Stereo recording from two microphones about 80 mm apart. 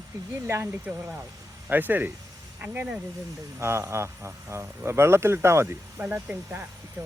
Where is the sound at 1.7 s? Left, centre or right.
Right.